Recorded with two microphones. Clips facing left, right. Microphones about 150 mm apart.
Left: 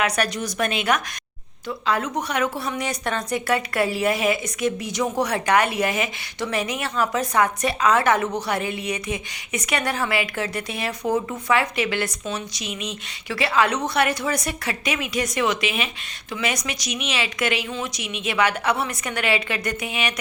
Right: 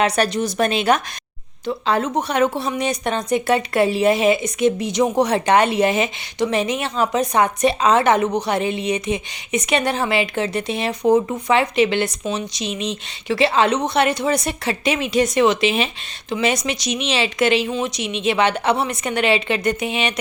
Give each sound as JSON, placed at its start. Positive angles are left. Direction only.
{"t": 0.0, "sound": "a woman's voice", "side_deg": -30}